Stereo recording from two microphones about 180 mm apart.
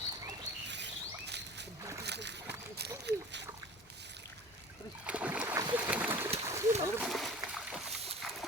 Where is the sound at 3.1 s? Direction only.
70° right (ahead or behind).